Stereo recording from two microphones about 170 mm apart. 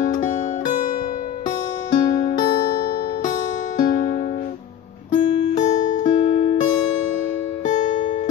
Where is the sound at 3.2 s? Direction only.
50° left (ahead or behind).